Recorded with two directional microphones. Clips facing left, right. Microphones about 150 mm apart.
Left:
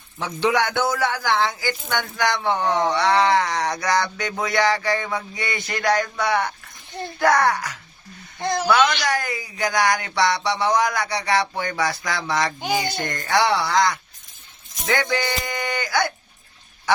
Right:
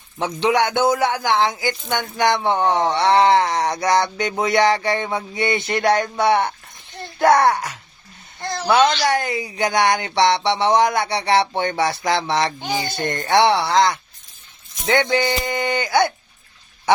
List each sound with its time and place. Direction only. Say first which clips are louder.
0.2 s speech: right 3 dB; 20° right (ahead or behind)
8.4 s a sound: left 4 dB; 20° left (ahead or behind)
8.6 s speech: right 4 dB; 20° right (ahead or behind)
12.5 s speech: left 1 dB; 10° left (ahead or behind)
13.0 s speech: right 8 dB; 25° right (ahead or behind)